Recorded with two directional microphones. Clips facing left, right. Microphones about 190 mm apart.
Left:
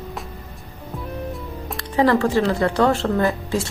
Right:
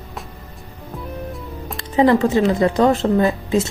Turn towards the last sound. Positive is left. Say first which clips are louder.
# right 4 dB
turn(degrees=-20)  # may be behind; listen again after turning